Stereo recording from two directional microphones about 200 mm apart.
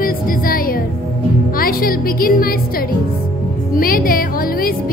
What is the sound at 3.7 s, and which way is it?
Music, 45° left (ahead or behind).